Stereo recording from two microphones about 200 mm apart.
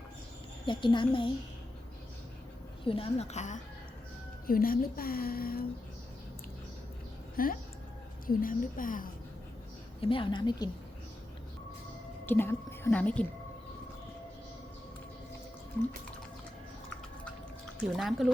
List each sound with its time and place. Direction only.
0.6 s speech: 25° left (ahead or behind)
2.8 s a woman's voice: 30° left (ahead or behind)
4.4 s speech: 45° left (ahead or behind)
7.4 s speech: 45° left (ahead or behind)
10.0 s speech: 25° left (ahead or behind)
12.2 s a woman's voice: 10° left (ahead or behind)
17.9 s speech: centre (ahead or behind)